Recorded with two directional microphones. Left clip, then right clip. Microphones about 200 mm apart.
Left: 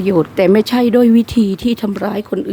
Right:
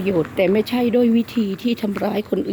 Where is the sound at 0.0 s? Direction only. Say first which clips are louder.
Left 6 dB; 35° left (ahead or behind).